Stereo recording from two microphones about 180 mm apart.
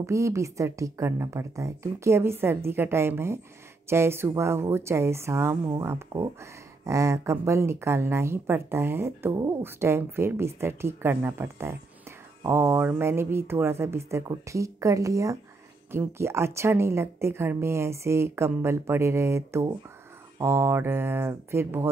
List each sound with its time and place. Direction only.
0.0 s speech: 15° right (ahead or behind)